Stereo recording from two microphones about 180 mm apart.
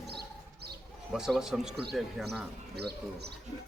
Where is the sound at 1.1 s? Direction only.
5° right (ahead or behind).